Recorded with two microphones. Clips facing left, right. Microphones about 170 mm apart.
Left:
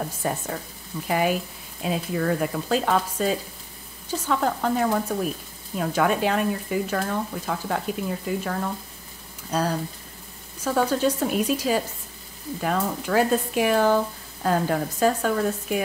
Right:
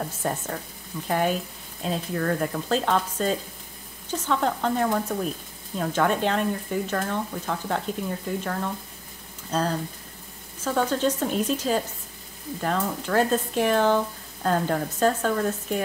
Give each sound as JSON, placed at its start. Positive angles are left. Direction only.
{"t": 0.0, "sound": "speech", "side_deg": 5}